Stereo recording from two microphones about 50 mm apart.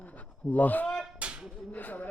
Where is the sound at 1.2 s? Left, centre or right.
Right.